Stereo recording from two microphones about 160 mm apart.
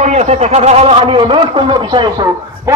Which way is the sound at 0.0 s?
45° right (ahead or behind).